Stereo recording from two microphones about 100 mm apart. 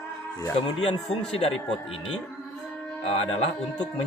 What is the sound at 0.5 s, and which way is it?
Speech, 70° left (ahead or behind).